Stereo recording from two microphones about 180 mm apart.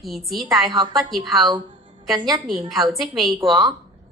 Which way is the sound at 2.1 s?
25° right (ahead or behind).